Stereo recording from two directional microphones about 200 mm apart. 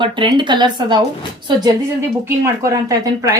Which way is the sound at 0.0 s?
25° right (ahead or behind).